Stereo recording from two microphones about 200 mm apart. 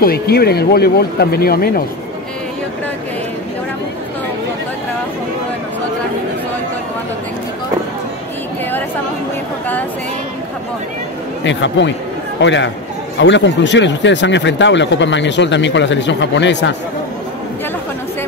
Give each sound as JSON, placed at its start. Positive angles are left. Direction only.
{"t": 0.0, "sound": "speech", "side_deg": 50}
{"t": 11.4, "sound": "speech", "side_deg": 65}